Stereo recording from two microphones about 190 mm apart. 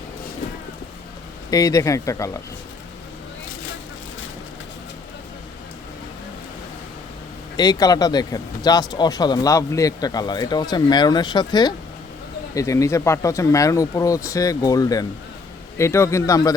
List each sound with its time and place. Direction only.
1.5 s speech: 20° left (ahead or behind)
7.5 s speech: 20° left (ahead or behind)